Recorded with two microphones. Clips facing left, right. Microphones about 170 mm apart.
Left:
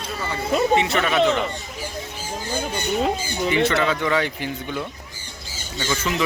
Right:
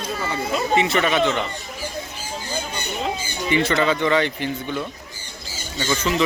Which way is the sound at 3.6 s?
Centre (ahead or behind).